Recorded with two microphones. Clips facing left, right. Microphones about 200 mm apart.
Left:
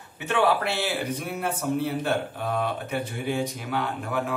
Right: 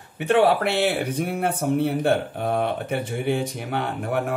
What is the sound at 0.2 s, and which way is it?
Speech, 55° right (ahead or behind).